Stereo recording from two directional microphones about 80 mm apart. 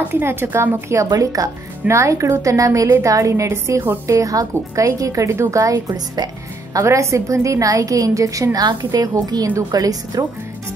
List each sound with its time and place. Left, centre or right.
0.1 s a woman's voice: right
1.1 s a woman's voice: right